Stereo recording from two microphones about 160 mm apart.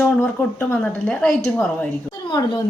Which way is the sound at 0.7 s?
5° left (ahead or behind).